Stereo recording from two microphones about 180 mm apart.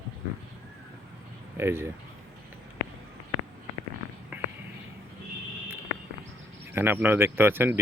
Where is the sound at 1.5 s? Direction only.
15° right (ahead or behind).